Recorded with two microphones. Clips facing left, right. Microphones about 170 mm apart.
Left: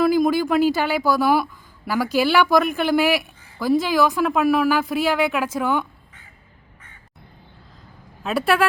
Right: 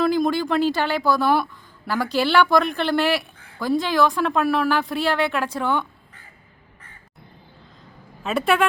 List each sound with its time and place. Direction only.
0.0 s a woman's voice: 10° left (ahead or behind)
8.2 s a woman's voice: centre (ahead or behind)